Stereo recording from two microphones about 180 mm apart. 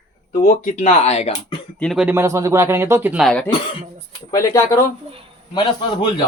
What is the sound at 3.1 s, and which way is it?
Speech, centre (ahead or behind).